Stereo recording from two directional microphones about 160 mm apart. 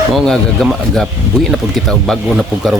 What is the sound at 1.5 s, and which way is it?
Speech, centre (ahead or behind).